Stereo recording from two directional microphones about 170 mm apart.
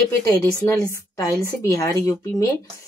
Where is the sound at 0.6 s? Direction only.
20° left (ahead or behind).